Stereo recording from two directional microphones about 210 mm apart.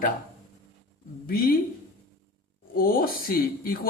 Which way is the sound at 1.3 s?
45° left (ahead or behind).